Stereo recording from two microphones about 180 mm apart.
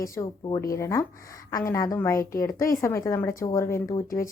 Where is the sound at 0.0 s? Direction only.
15° left (ahead or behind).